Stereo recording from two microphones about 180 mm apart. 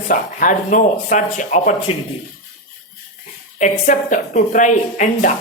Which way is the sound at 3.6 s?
45° left (ahead or behind).